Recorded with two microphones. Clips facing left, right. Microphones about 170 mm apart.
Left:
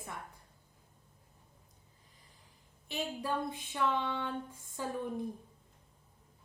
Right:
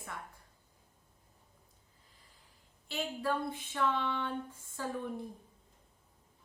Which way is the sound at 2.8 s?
15° left (ahead or behind).